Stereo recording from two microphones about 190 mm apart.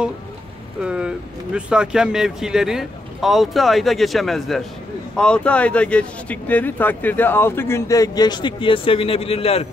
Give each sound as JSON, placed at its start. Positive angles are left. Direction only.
{"t": 0.8, "sound": "speech", "side_deg": -5}